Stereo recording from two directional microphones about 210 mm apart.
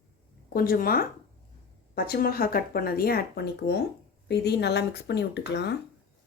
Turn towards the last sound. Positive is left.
turn(degrees=55)  # may be behind; listen again after turning